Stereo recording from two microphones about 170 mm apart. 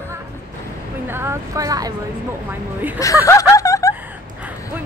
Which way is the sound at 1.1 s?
15° right (ahead or behind).